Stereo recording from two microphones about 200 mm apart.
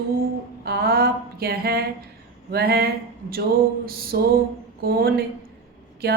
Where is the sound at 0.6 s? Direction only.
50° right (ahead or behind).